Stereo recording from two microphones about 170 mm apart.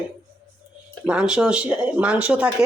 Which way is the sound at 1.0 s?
5° right (ahead or behind).